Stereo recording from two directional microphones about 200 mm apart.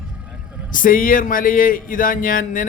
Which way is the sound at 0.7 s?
45° left (ahead or behind).